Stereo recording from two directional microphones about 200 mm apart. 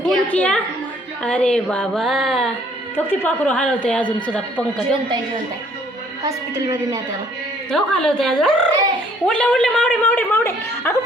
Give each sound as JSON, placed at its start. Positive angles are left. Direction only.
{"t": 0.0, "sound": "a woman's voice", "side_deg": 5}
{"t": 5.0, "sound": "a woman's voice", "side_deg": -20}
{"t": 7.7, "sound": "a woman's voice", "side_deg": 5}